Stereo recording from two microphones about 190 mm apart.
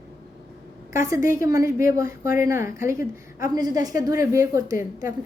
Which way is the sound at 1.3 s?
15° right (ahead or behind).